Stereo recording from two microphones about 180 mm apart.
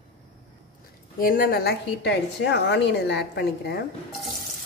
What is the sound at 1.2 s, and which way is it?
A woman's voice, 55° left (ahead or behind).